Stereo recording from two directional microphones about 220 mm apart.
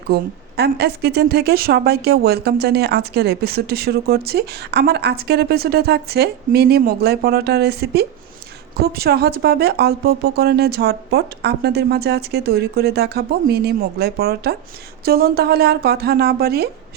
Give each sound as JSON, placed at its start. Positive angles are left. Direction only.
{"t": 0.1, "sound": "a woman's voice", "side_deg": -50}